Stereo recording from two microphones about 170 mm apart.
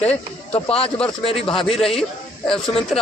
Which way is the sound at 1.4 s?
30° left (ahead or behind).